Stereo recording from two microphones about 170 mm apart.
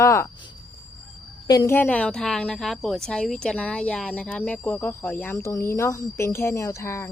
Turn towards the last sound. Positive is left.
turn(degrees=15)  # may be behind; listen again after turning